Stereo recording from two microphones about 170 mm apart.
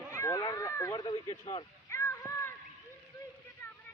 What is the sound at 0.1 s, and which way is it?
Cat, 15° left (ahead or behind).